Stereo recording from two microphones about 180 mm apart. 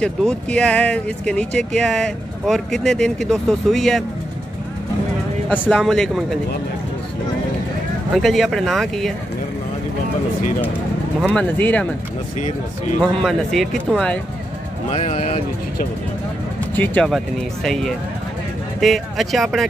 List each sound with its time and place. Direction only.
0.0 s speech: 5° left (ahead or behind)
5.5 s speech: centre (ahead or behind)
8.2 s speech: centre (ahead or behind)
11.1 s speech: 5° left (ahead or behind)
13.0 s speech: centre (ahead or behind)
14.9 s speech: 35° left (ahead or behind)
16.7 s speech: 10° left (ahead or behind)